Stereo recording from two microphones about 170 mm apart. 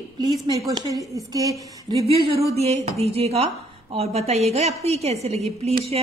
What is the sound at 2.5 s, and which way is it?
Speech, 40° right (ahead or behind).